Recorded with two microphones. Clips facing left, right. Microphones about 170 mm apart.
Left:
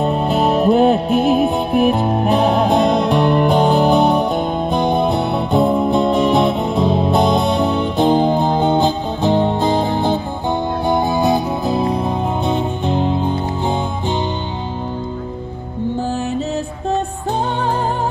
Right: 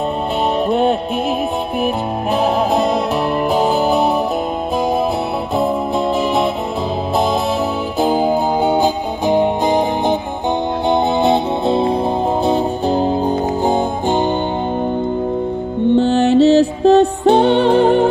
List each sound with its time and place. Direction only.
0.7 s music: centre (ahead or behind)
5.5 s music: centre (ahead or behind)
10.9 s music: 25° right (ahead or behind)
16.0 s music: 75° right (ahead or behind)